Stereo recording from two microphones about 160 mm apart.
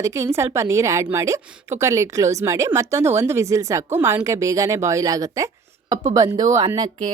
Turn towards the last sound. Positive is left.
turn(degrees=-20)  # may be behind; listen again after turning